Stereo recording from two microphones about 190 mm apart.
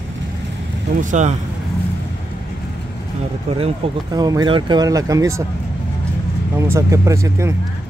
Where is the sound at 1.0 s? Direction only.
40° right (ahead or behind).